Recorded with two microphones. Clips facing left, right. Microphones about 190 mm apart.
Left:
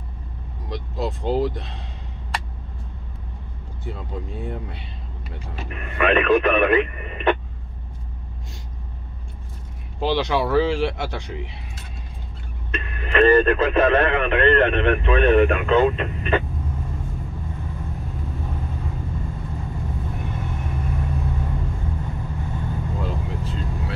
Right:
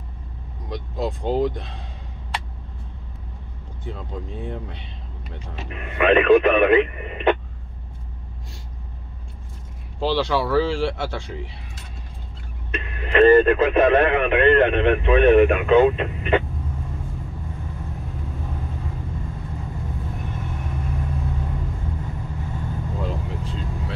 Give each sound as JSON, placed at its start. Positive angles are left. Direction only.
{"t": 0.7, "sound": "speech", "side_deg": 0}
{"t": 3.8, "sound": "speech", "side_deg": 10}
{"t": 5.9, "sound": "speech", "side_deg": -20}
{"t": 9.9, "sound": "speech", "side_deg": 15}
{"t": 12.7, "sound": "speech", "side_deg": -20}